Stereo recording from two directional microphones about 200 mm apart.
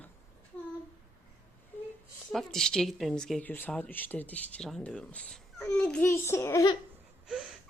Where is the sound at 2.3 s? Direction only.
Centre (ahead or behind).